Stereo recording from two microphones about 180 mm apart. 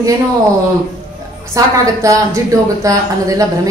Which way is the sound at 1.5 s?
15° right (ahead or behind).